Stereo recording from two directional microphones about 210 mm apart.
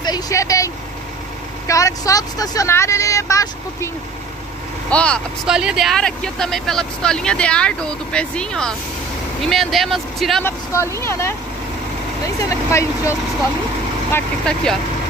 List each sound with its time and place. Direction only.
0.0 s vehicle: 15° left (ahead or behind)
1.7 s speech: 15° left (ahead or behind)
10.4 s speech: 15° left (ahead or behind)
12.4 s speech: 15° left (ahead or behind)
14.1 s speech: 5° left (ahead or behind)